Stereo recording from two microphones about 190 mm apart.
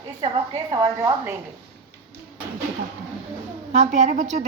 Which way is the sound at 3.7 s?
35° right (ahead or behind).